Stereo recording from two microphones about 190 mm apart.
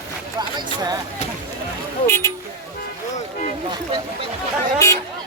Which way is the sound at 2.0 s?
15° left (ahead or behind).